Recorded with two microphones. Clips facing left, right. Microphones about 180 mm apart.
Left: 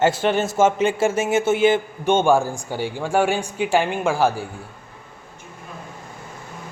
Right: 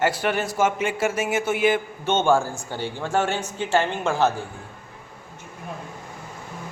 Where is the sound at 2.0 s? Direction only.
15° left (ahead or behind).